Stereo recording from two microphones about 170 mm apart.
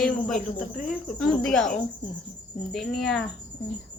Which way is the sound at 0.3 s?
55° left (ahead or behind).